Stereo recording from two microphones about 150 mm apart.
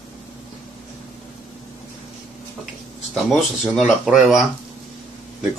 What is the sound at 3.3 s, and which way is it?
Speech, centre (ahead or behind).